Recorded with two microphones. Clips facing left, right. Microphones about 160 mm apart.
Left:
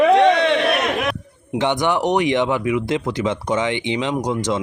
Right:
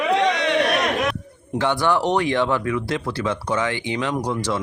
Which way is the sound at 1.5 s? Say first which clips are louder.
Left 1 dB; 20° left (ahead or behind).